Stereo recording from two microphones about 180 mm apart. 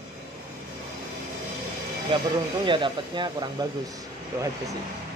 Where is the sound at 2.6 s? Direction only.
25° right (ahead or behind).